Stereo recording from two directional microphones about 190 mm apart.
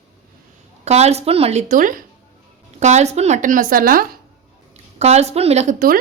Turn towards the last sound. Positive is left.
turn(degrees=-45)  # may be behind; listen again after turning